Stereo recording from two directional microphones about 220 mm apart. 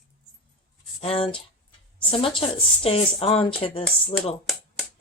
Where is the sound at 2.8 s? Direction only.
25° left (ahead or behind).